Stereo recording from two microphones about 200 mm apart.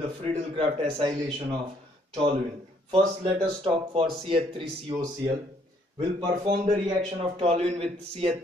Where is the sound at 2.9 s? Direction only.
25° right (ahead or behind).